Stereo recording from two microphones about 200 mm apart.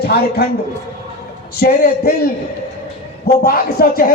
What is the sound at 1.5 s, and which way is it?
Speech, 50° left (ahead or behind).